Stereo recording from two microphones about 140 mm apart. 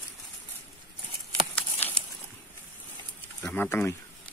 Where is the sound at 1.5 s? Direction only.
15° left (ahead or behind).